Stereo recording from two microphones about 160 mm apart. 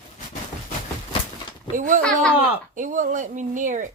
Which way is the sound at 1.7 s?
55° right (ahead or behind).